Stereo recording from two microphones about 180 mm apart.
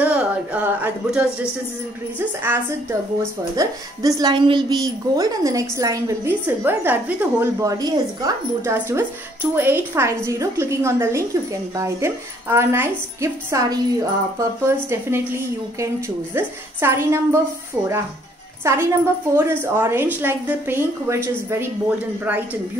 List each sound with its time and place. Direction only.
0.0 s speech: 5° right (ahead or behind)
8.7 s speech: 10° right (ahead or behind)
16.3 s speech: 15° right (ahead or behind)
18.6 s speech: 15° right (ahead or behind)